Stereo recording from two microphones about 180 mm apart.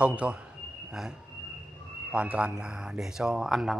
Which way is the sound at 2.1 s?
5° right (ahead or behind).